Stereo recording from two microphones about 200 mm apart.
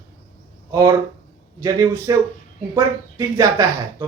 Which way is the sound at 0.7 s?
15° right (ahead or behind).